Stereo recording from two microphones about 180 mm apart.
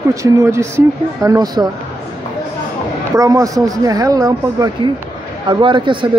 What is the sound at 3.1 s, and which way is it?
Speech, 20° right (ahead or behind).